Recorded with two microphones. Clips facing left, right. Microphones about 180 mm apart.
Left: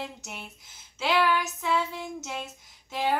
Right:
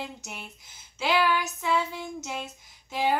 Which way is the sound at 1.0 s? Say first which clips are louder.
Even; centre (ahead or behind).